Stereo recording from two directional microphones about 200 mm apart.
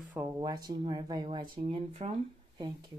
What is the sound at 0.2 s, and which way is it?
Speech, 10° right (ahead or behind).